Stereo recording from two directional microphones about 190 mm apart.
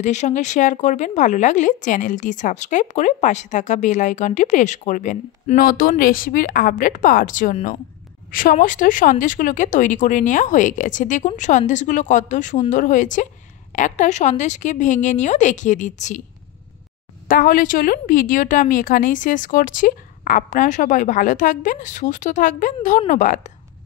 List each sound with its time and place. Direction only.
0.0 s a woman's voice: 40° left (ahead or behind)
17.3 s a woman's voice: 45° left (ahead or behind)